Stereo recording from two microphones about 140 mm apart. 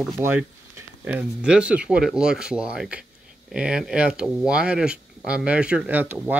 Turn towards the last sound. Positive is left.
turn(degrees=-10)  # may be behind; listen again after turning